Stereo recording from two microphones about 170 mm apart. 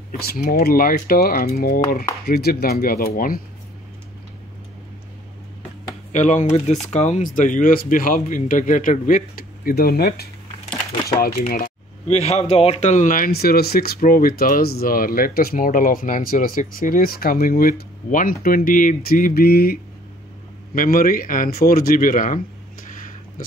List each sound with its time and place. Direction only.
0.2 s speech: 60° left (ahead or behind)
6.1 s speech: 45° left (ahead or behind)